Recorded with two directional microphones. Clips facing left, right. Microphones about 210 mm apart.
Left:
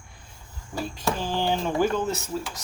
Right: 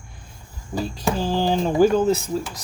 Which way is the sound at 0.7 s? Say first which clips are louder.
Right 4 dB; 35° right (ahead or behind).